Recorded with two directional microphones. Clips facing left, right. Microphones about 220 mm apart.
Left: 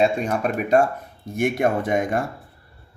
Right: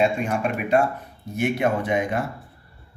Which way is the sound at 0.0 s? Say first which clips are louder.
Left 1 dB; 40° left (ahead or behind).